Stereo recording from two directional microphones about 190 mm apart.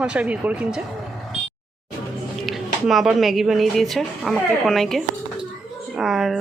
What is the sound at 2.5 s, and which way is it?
A woman's voice, centre (ahead or behind).